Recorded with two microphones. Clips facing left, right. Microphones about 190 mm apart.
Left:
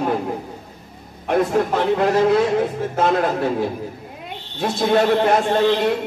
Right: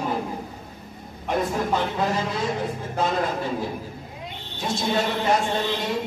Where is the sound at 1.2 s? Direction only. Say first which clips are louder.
Left 6 dB; 65° left (ahead or behind).